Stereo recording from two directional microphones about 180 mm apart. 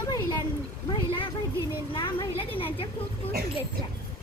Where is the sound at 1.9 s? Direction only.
25° left (ahead or behind).